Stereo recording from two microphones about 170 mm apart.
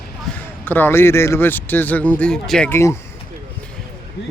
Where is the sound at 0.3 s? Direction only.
10° left (ahead or behind).